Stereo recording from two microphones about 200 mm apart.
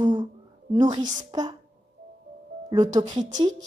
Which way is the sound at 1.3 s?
20° right (ahead or behind).